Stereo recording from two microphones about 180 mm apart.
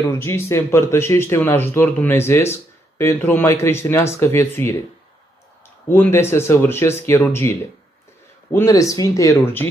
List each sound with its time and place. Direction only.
0.0 s speech: 15° left (ahead or behind)
5.9 s speech: 15° left (ahead or behind)